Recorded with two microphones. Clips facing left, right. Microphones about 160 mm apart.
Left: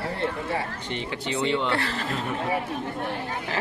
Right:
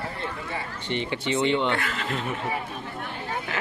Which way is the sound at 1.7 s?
35° left (ahead or behind).